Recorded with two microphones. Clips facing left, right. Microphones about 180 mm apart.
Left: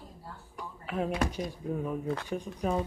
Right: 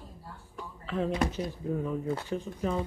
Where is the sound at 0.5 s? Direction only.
10° left (ahead or behind).